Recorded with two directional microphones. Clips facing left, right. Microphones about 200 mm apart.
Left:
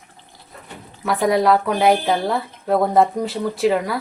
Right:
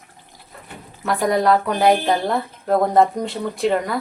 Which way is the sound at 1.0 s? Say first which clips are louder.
Left 1 dB; centre (ahead or behind).